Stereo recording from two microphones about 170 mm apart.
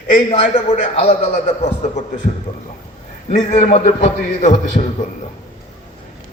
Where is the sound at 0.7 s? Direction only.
40° left (ahead or behind).